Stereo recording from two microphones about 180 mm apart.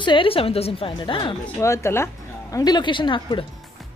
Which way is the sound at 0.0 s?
30° left (ahead or behind).